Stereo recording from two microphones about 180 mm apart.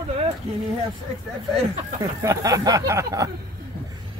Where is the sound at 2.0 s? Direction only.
20° right (ahead or behind).